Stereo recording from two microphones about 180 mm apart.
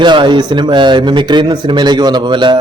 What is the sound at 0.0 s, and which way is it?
Speech, 25° right (ahead or behind).